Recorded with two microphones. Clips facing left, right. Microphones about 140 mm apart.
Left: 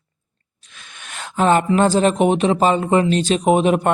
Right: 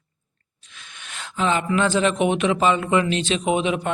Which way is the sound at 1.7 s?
40° left (ahead or behind).